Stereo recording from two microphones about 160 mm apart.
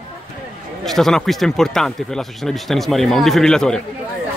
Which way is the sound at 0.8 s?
Centre (ahead or behind).